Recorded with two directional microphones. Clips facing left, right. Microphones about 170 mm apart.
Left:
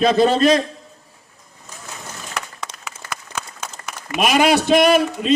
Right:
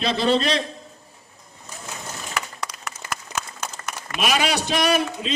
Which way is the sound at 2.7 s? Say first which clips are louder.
Left 1 dB; 25° left (ahead or behind).